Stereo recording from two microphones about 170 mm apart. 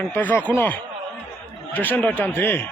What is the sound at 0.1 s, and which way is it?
Speech, 10° left (ahead or behind).